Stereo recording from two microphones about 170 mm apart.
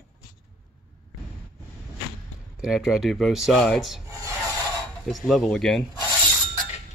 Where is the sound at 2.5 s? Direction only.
5° right (ahead or behind).